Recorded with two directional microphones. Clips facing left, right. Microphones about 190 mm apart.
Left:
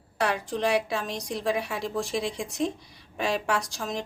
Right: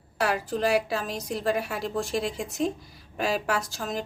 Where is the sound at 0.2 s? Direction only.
5° right (ahead or behind).